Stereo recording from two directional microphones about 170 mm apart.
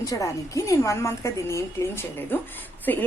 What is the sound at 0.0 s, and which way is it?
A woman's voice, 20° left (ahead or behind).